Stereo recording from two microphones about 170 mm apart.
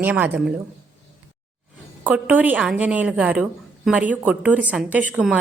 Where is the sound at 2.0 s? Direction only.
10° right (ahead or behind).